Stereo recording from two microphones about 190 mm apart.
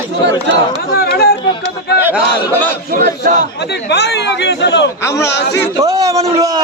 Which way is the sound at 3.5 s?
60° left (ahead or behind).